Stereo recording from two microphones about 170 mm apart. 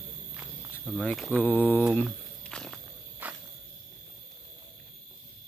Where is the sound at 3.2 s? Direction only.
10° right (ahead or behind).